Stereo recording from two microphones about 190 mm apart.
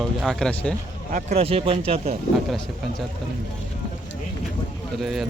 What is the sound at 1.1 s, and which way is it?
Speech, 35° right (ahead or behind).